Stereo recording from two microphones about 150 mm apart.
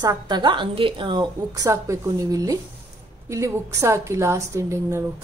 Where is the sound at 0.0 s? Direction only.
25° right (ahead or behind).